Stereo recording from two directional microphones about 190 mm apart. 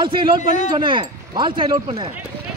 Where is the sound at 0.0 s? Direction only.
25° right (ahead or behind).